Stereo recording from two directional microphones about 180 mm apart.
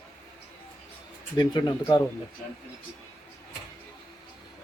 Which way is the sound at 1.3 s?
25° left (ahead or behind).